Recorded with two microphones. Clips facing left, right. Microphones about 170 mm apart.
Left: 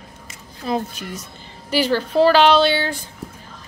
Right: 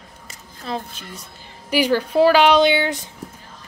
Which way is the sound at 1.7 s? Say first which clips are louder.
Right 1 dB; 10° right (ahead or behind).